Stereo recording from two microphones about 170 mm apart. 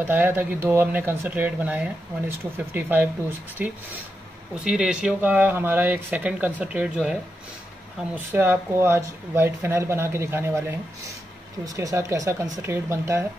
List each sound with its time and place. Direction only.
0.0 s speech: 10° right (ahead or behind)
11.6 s speech: 20° right (ahead or behind)